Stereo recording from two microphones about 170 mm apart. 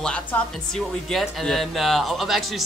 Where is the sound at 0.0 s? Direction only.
5° left (ahead or behind).